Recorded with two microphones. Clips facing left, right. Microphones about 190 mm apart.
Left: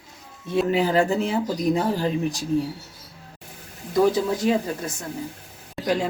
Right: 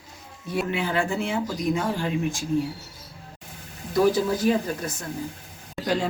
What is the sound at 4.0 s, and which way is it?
Speech, 20° left (ahead or behind).